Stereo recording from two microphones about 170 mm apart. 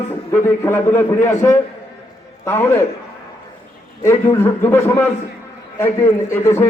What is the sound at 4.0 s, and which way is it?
A man's voice, 15° left (ahead or behind).